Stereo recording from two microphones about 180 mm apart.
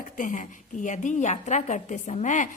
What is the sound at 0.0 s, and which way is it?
A woman's voice, 45° left (ahead or behind).